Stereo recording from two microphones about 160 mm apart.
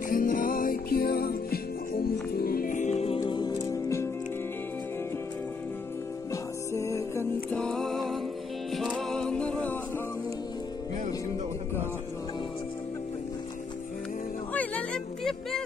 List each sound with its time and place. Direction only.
0.1 s music: 60° left (ahead or behind); by 3.2 s 40° left (ahead or behind)
3.2 s music: 25° left (ahead or behind)
6.7 s music: 20° left (ahead or behind)
7.5 s music: 5° left (ahead or behind)
14.5 s music: 10° left (ahead or behind)